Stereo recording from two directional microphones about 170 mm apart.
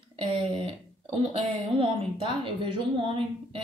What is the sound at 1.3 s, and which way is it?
Speech, 30° right (ahead or behind).